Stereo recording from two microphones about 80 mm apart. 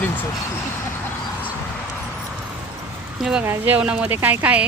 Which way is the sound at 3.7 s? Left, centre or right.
Centre.